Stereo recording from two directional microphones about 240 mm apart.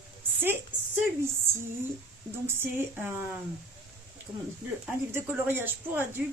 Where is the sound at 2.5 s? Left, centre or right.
Centre.